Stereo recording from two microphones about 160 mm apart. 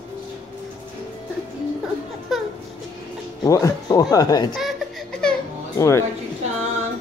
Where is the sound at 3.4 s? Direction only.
20° left (ahead or behind).